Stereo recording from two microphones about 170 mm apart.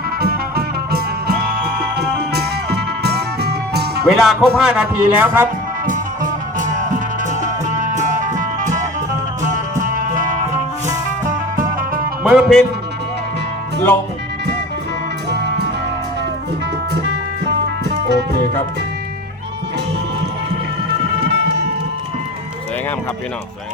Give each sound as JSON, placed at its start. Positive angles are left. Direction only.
{"t": 0.2, "sound": "music", "side_deg": -65}
{"t": 4.0, "sound": "speech", "side_deg": 0}
{"t": 5.8, "sound": "music", "side_deg": -50}
{"t": 12.3, "sound": "speech", "side_deg": -5}
{"t": 17.8, "sound": "music", "side_deg": -85}
{"t": 21.2, "sound": "music", "side_deg": -85}